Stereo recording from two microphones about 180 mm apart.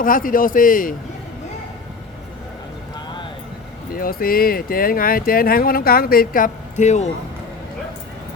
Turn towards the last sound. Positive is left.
turn(degrees=40)  # may be behind; listen again after turning